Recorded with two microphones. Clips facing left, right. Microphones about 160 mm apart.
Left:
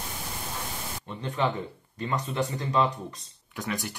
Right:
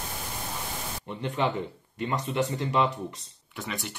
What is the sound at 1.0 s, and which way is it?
Speech, 20° right (ahead or behind).